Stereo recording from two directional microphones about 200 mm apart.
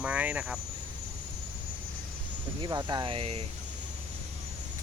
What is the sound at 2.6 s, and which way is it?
Speech, 20° right (ahead or behind).